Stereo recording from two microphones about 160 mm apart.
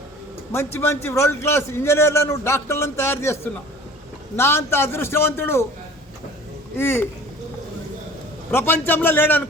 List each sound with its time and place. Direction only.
0.5 s a man's voice: 15° left (ahead or behind)
6.7 s a man's voice: 15° left (ahead or behind)
8.4 s a man's voice: 15° left (ahead or behind)